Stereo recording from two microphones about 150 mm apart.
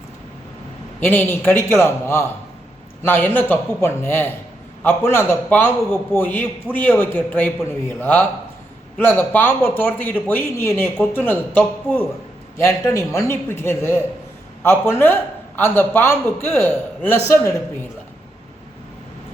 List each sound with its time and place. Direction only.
1.0 s a man's voice: 15° left (ahead or behind)